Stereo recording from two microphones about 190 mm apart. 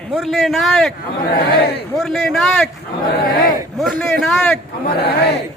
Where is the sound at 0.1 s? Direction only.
Centre (ahead or behind).